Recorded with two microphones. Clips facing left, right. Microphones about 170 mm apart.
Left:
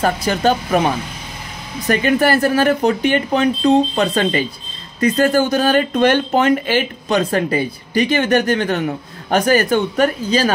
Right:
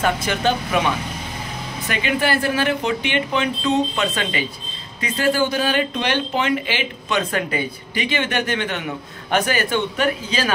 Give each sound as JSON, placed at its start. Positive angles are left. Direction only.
{"t": 0.0, "sound": "speech", "side_deg": 35}